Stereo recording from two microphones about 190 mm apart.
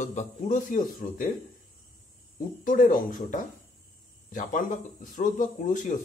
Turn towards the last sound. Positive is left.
turn(degrees=45)  # may be behind; listen again after turning